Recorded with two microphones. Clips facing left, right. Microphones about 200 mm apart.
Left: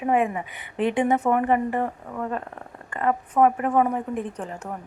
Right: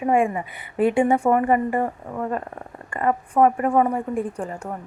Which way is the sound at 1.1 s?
10° right (ahead or behind).